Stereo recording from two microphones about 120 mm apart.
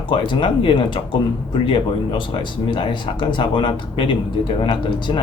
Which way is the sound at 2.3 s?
40° left (ahead or behind).